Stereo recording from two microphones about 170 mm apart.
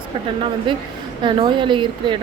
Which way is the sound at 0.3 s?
30° right (ahead or behind).